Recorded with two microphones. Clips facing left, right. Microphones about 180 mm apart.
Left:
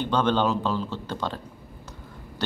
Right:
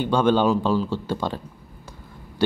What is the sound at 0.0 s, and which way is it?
Speech, 10° right (ahead or behind).